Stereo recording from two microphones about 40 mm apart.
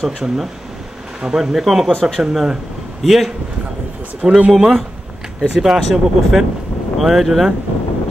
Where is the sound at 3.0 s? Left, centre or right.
Centre.